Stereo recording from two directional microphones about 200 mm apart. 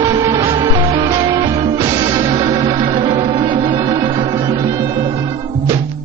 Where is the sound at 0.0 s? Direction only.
25° right (ahead or behind).